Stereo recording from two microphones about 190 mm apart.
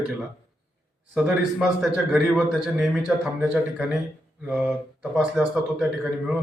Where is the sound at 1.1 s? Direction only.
5° right (ahead or behind).